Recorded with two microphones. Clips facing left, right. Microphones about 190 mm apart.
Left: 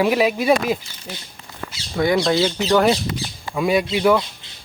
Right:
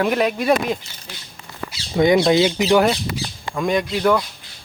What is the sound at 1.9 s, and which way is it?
Speech, 20° right (ahead or behind).